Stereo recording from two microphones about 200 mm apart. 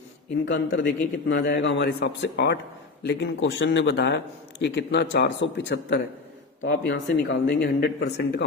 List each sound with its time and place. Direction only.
0.4 s speech: 60° left (ahead or behind)